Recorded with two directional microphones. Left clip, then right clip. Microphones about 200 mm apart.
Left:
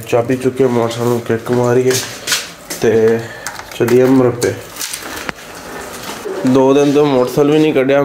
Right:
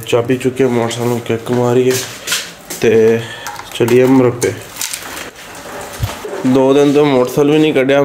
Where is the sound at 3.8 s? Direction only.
20° right (ahead or behind).